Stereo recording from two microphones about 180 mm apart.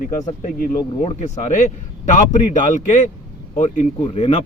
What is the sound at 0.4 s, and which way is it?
Speech, 50° left (ahead or behind).